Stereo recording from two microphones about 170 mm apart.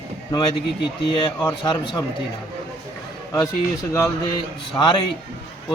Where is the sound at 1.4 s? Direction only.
25° left (ahead or behind).